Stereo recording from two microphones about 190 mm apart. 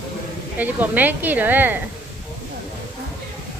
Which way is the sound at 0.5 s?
10° right (ahead or behind).